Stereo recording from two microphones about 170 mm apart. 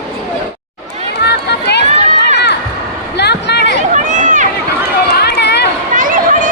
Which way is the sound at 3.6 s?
45° right (ahead or behind).